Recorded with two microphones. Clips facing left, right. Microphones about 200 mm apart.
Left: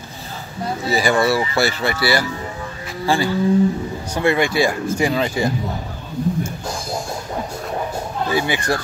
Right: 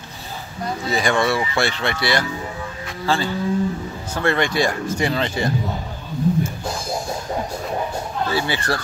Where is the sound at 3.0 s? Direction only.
10° left (ahead or behind).